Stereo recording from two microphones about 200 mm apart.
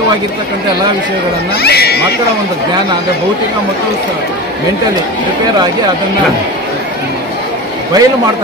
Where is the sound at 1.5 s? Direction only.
55° left (ahead or behind).